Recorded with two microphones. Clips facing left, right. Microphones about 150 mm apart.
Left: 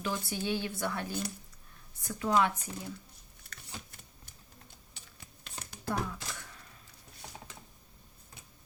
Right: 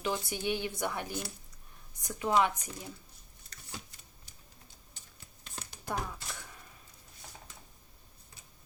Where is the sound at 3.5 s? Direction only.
55° left (ahead or behind).